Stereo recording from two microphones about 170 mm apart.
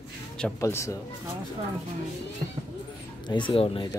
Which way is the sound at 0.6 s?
15° left (ahead or behind).